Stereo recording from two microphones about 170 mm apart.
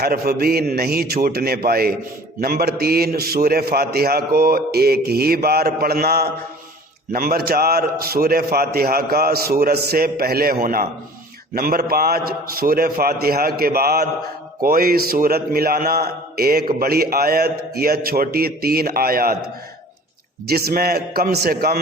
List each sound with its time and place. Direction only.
0.0 s a man's voice: 60° right (ahead or behind)
20.5 s a man's voice: 65° right (ahead or behind)